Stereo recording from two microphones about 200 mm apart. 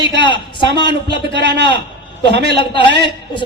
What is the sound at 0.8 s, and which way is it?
A man's voice, 60° right (ahead or behind).